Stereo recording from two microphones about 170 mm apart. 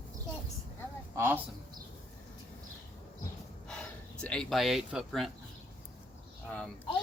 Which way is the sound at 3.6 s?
5° left (ahead or behind).